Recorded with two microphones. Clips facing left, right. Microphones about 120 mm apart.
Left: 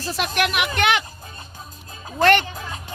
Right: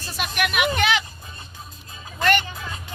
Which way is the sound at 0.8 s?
60° left (ahead or behind).